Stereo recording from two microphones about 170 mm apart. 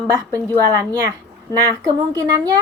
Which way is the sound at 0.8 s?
20° right (ahead or behind).